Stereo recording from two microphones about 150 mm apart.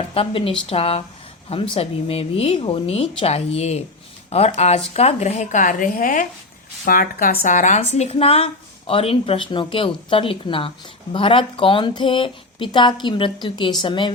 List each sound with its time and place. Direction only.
0.1 s a woman's voice: 40° left (ahead or behind); by 7.3 s 70° left (ahead or behind)
7.4 s a woman's voice: 55° left (ahead or behind); by 14.1 s 35° left (ahead or behind)